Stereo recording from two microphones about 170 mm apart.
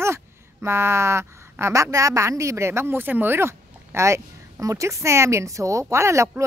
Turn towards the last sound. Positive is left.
turn(degrees=-15)  # may be behind; listen again after turning